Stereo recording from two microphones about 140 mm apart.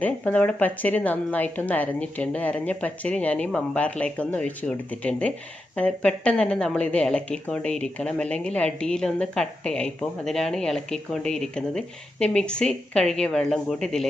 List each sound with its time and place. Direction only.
0.0 s a woman's voice: 10° left (ahead or behind)